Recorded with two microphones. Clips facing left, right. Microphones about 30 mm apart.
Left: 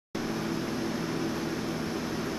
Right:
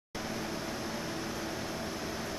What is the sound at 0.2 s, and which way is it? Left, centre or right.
Vehicle, centre.